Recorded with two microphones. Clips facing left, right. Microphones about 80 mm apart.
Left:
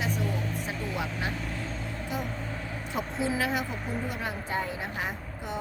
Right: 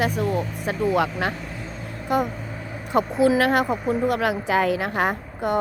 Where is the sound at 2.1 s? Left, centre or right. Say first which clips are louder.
Right 13 dB; right.